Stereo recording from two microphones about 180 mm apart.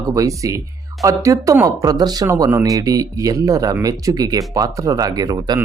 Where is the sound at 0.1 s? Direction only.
20° right (ahead or behind).